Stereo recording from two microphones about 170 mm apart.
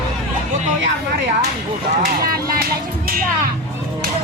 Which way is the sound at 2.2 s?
55° right (ahead or behind).